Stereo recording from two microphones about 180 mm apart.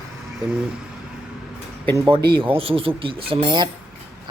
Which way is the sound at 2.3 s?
30° right (ahead or behind).